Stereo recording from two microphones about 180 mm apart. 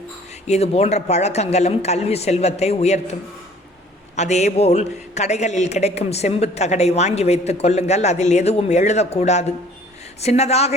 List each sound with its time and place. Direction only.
0.4 s a man's voice: 35° left (ahead or behind)
4.2 s a man's voice: 40° left (ahead or behind)